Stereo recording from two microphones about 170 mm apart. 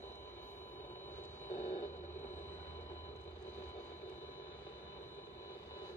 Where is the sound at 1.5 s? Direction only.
40° left (ahead or behind).